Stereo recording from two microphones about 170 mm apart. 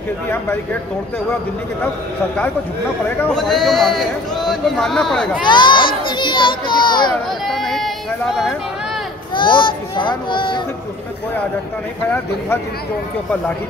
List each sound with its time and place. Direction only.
3.2 s speech: 5° left (ahead or behind)
5.4 s children playing: 25° left (ahead or behind)
7.4 s a sound: centre (ahead or behind)
9.3 s a child's voice: 30° left (ahead or behind)